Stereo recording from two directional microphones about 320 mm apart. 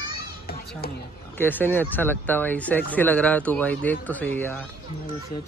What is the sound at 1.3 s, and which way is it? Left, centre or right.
Speech, centre.